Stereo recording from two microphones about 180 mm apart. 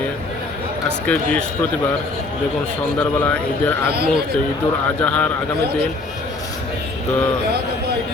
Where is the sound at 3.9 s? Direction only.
60° right (ahead or behind).